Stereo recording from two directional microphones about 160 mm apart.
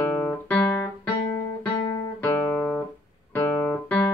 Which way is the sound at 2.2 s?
15° left (ahead or behind).